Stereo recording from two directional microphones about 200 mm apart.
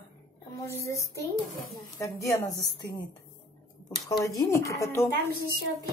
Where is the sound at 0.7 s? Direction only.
15° left (ahead or behind).